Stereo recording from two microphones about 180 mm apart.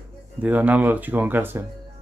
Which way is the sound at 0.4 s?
10° right (ahead or behind).